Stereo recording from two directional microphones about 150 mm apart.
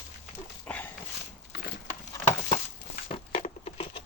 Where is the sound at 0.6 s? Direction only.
10° left (ahead or behind).